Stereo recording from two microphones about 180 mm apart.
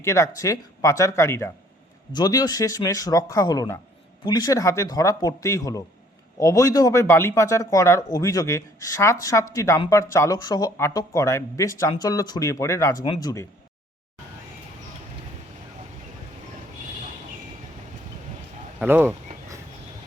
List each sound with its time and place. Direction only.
0.0 s speech: 15° left (ahead or behind)
18.8 s speech: 10° right (ahead or behind)